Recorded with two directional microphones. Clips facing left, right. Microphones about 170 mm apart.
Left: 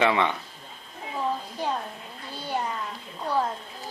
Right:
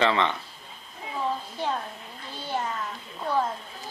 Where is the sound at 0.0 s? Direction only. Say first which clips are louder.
Left 1 dB; 10° left (ahead or behind).